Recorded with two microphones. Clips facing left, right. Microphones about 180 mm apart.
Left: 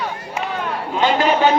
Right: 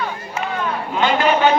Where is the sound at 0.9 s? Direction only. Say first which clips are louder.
Left 1 dB; 35° left (ahead or behind).